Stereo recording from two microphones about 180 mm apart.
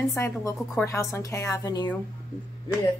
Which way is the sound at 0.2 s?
15° left (ahead or behind).